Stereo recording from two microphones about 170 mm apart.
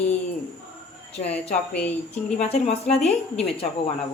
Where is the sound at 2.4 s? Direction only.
35° left (ahead or behind).